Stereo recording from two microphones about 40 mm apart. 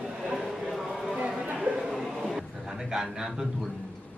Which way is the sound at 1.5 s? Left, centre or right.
Right.